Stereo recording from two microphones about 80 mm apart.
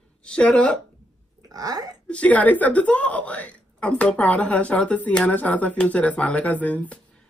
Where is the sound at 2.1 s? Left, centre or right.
Centre.